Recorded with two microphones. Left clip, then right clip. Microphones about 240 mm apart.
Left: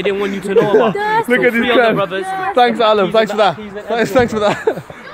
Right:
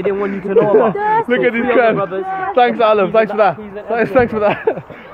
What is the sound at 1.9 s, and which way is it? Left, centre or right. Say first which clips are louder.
Speech: left 1 dB; centre.